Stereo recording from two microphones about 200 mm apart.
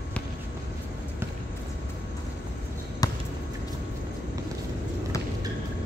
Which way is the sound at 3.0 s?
20° left (ahead or behind).